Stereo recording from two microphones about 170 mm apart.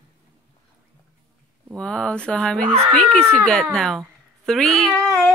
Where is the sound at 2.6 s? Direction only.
35° right (ahead or behind).